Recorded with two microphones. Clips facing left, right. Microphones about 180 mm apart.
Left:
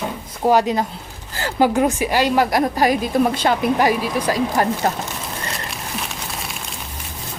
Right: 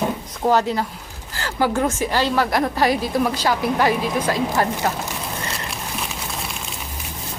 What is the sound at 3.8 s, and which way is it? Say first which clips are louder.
Speech: left 1 dB; 15° left (ahead or behind).